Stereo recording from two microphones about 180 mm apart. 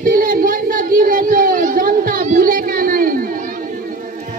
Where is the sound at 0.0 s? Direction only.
50° right (ahead or behind).